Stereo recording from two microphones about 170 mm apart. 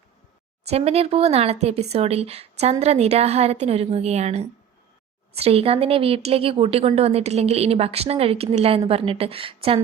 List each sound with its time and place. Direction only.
0.6 s a woman's voice: 40° right (ahead or behind)